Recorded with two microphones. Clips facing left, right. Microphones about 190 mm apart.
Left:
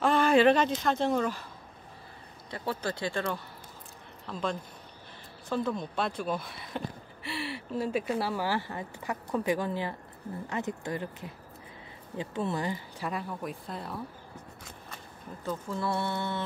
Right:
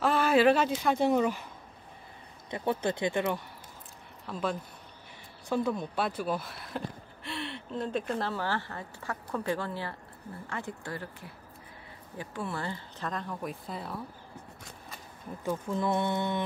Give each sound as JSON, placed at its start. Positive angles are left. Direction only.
{"t": 0.0, "sound": "speech", "side_deg": -5}
{"t": 2.5, "sound": "speech", "side_deg": -20}
{"t": 4.3, "sound": "mantra", "side_deg": -5}
{"t": 5.5, "sound": "speech", "side_deg": -10}
{"t": 15.4, "sound": "mantra", "side_deg": -15}